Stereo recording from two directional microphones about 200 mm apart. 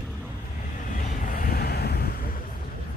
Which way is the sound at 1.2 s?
45° left (ahead or behind).